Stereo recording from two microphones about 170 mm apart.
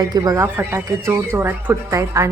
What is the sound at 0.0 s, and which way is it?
Speech, 20° right (ahead or behind).